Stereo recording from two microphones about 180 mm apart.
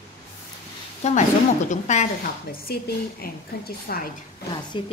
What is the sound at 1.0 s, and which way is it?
A woman's voice, 40° left (ahead or behind).